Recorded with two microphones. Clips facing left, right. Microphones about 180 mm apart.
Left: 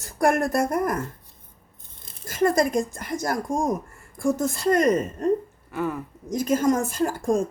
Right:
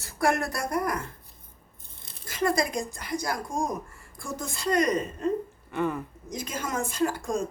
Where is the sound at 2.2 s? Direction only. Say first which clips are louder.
Left 5 dB; 45° left (ahead or behind).